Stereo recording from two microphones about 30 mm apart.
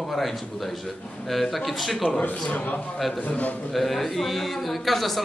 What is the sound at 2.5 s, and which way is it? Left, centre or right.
Speech, left.